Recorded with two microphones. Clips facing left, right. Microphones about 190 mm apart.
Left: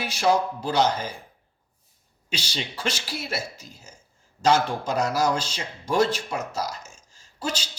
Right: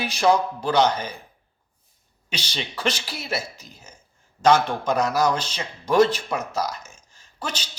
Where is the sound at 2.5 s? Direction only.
60° right (ahead or behind).